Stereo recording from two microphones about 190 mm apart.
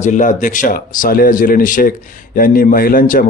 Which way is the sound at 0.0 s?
40° left (ahead or behind).